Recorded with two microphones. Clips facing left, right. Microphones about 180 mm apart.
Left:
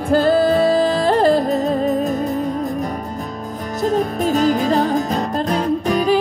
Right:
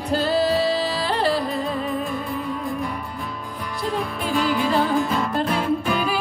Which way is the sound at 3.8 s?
45° left (ahead or behind).